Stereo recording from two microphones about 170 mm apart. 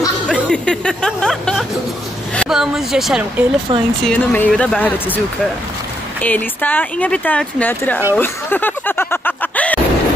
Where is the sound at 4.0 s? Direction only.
10° left (ahead or behind).